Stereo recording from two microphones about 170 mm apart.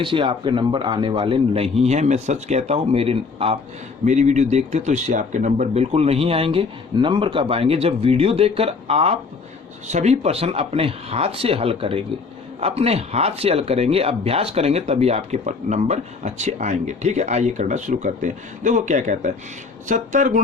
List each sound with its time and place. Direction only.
0.0 s speech: 30° right (ahead or behind); by 20.4 s 45° right (ahead or behind)